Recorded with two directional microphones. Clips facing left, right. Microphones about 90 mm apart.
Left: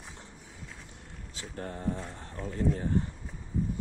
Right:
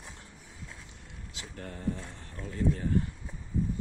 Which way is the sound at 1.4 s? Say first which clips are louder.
Left 4 dB; 30° left (ahead or behind).